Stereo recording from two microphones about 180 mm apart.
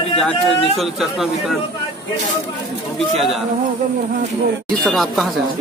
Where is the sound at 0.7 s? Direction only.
Centre (ahead or behind).